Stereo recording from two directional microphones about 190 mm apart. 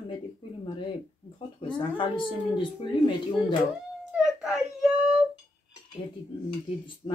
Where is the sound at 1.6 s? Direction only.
25° left (ahead or behind).